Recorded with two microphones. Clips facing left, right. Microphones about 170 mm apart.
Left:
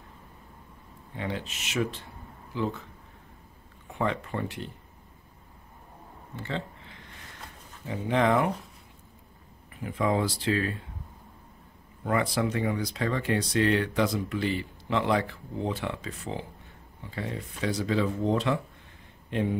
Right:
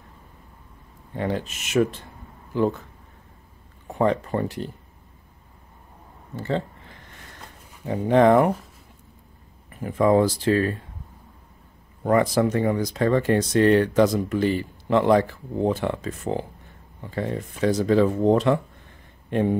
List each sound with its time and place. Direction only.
1.1 s speech: 45° right (ahead or behind)
3.8 s speech: 40° right (ahead or behind)
6.3 s a sound: 40° right (ahead or behind)
7.8 s speech: 45° right (ahead or behind)
9.7 s speech: 45° right (ahead or behind)
12.0 s speech: 45° right (ahead or behind)